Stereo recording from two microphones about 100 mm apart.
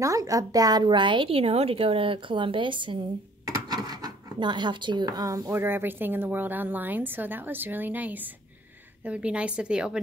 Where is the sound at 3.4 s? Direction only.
40° right (ahead or behind).